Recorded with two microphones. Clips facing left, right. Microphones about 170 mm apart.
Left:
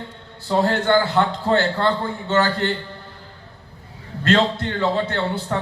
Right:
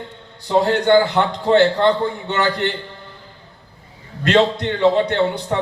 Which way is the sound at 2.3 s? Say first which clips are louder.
Left 3 dB; 40° left (ahead or behind).